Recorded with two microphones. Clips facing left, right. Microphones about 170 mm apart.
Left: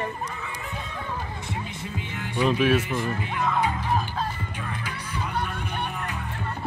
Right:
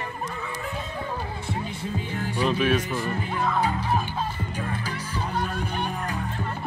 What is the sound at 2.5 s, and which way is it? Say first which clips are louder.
Speech: left 2 dB; 5° left (ahead or behind).